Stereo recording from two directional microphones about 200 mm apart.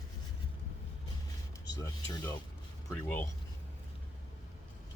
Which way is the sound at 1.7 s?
15° left (ahead or behind).